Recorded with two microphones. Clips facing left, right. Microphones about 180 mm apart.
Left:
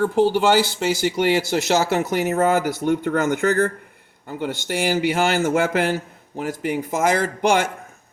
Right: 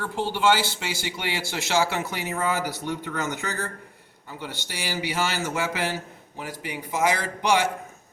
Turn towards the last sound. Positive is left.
turn(degrees=50)  # may be behind; listen again after turning